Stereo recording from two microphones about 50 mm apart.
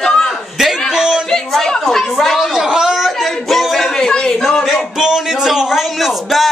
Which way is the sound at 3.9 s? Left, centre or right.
Centre.